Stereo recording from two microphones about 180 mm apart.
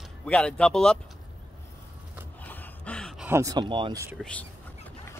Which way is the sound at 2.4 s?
10° left (ahead or behind).